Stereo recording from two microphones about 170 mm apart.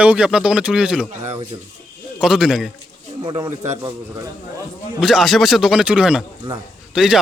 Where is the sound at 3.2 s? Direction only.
30° right (ahead or behind).